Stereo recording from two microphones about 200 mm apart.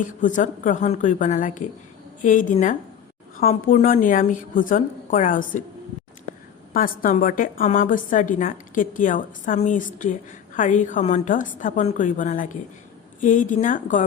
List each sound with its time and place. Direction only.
0.0 s a woman's voice: 40° left (ahead or behind)
6.7 s a woman's voice: 45° left (ahead or behind)